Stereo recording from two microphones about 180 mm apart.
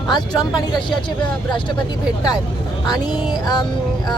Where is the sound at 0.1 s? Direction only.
20° left (ahead or behind).